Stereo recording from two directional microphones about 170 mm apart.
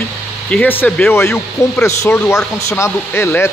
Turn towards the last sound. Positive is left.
turn(degrees=15)  # may be behind; listen again after turning